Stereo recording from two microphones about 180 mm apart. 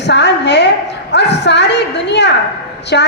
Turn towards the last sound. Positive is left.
turn(degrees=75)  # may be behind; listen again after turning